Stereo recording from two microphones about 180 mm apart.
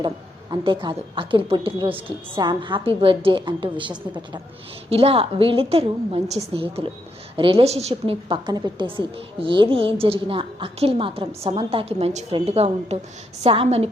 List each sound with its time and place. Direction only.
0.5 s a woman's voice: 25° right (ahead or behind)